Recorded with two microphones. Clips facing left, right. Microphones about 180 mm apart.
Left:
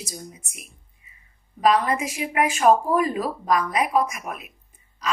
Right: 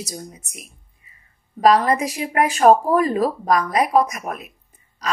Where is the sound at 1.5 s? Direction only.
40° right (ahead or behind).